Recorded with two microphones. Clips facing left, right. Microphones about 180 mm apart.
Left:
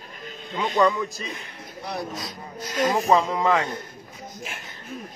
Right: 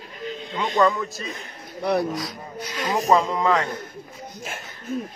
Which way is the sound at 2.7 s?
45° left (ahead or behind).